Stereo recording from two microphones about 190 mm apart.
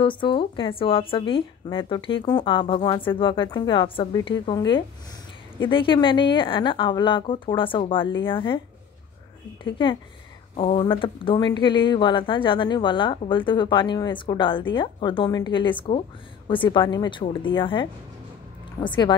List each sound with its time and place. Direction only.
0.0 s speech: 25° left (ahead or behind)
9.6 s speech: 25° left (ahead or behind)